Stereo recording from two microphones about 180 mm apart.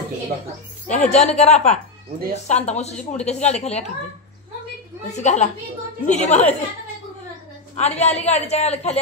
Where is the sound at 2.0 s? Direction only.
55° right (ahead or behind).